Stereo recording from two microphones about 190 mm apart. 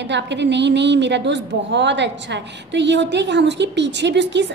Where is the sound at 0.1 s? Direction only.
65° right (ahead or behind).